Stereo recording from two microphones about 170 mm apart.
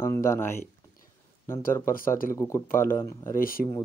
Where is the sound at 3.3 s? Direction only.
55° left (ahead or behind).